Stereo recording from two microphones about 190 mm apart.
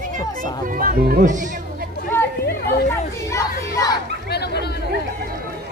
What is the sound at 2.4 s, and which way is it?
Chatter, 55° left (ahead or behind).